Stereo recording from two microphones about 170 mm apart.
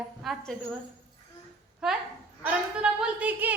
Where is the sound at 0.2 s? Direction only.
Centre (ahead or behind).